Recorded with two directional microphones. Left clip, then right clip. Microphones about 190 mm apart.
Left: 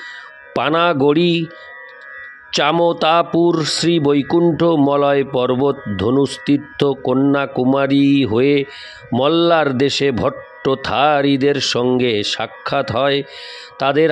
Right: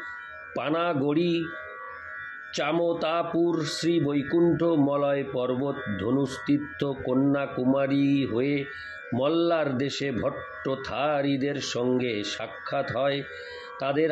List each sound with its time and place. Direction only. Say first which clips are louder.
0.5 s speech: left 12 dB; 60° left (ahead or behind)
2.5 s speech: left 11 dB; 60° left (ahead or behind)